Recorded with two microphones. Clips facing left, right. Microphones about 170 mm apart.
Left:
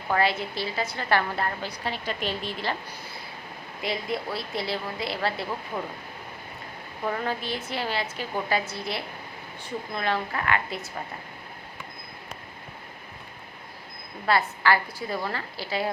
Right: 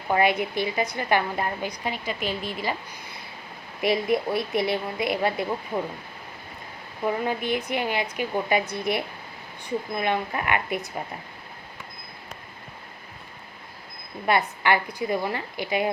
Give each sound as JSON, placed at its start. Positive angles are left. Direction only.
{"t": 0.1, "sound": "a woman's voice", "side_deg": -15}
{"t": 3.8, "sound": "a woman's voice", "side_deg": -20}
{"t": 7.0, "sound": "a woman's voice", "side_deg": -15}
{"t": 14.3, "sound": "a woman's voice", "side_deg": -20}